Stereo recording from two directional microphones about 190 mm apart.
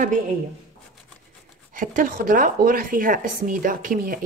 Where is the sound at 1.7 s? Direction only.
45° right (ahead or behind).